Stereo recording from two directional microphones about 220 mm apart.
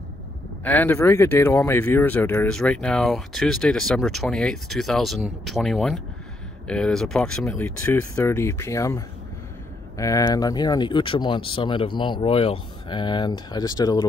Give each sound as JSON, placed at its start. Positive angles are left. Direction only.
{"t": 0.7, "sound": "speech", "side_deg": 10}